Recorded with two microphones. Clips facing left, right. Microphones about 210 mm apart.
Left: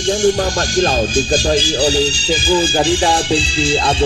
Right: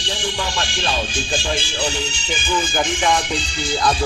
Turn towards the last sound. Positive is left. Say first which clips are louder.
# left 4 dB
turn(degrees=30)  # may be behind; listen again after turning